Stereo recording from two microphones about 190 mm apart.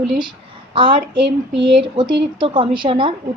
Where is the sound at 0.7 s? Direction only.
25° right (ahead or behind).